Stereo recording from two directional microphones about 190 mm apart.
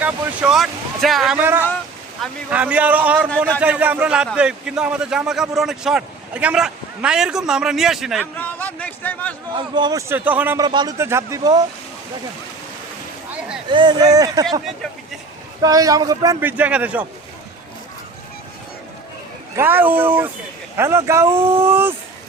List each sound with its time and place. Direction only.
0.0 s a man's voice: 5° right (ahead or behind)
8.4 s a man's voice: 10° left (ahead or behind)
9.6 s a man's voice: 25° right (ahead or behind)
10.1 s speech: 10° right (ahead or behind)
10.6 s a man's voice: 20° right (ahead or behind)
13.7 s a man's voice: 25° right (ahead or behind)
15.6 s a man's voice: 20° right (ahead or behind)
19.5 s speech: 10° right (ahead or behind)